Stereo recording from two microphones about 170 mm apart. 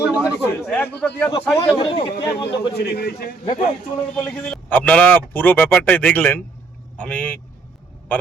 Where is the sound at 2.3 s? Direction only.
80° left.